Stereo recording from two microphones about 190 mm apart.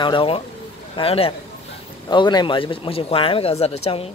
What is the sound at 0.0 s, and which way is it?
Speech, 25° left (ahead or behind).